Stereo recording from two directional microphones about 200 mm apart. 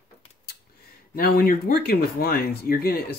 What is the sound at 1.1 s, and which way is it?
Speech, 50° left (ahead or behind).